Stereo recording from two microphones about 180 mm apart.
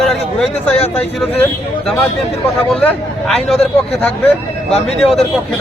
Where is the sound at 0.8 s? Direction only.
35° left (ahead or behind).